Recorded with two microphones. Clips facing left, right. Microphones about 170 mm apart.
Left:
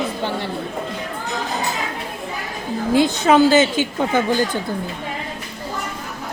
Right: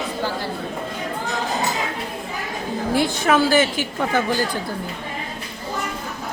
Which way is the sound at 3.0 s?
20° left (ahead or behind).